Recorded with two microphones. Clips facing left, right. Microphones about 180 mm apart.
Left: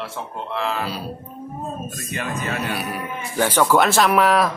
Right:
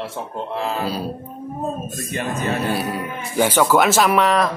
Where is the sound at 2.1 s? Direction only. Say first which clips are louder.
Right 4 dB; 40° right (ahead or behind).